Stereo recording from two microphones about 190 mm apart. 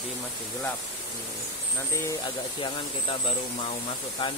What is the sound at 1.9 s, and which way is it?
Speech, 15° left (ahead or behind).